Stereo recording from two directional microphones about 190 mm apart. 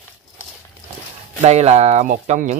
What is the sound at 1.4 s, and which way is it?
Speech, 35° right (ahead or behind).